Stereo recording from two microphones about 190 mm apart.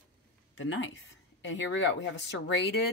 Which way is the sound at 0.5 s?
85° left.